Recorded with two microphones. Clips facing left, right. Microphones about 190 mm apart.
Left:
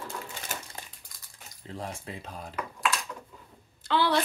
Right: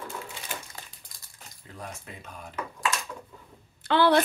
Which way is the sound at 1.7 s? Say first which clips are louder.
Left 4 dB; 30° left (ahead or behind).